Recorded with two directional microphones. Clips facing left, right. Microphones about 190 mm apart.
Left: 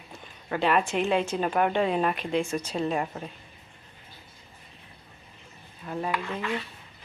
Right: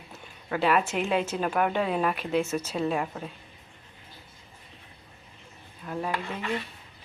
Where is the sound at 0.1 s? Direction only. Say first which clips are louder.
Even; 5° right (ahead or behind).